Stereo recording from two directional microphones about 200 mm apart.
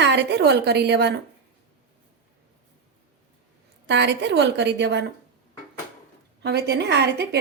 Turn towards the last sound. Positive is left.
turn(degrees=-55)  # may be behind; listen again after turning